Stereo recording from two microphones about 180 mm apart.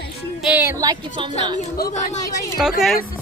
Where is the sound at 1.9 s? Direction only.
40° left (ahead or behind).